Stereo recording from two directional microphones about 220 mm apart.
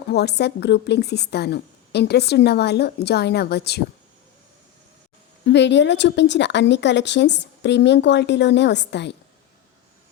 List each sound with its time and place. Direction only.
0.1 s a woman's voice: 50° left (ahead or behind)
5.5 s a woman's voice: 50° left (ahead or behind)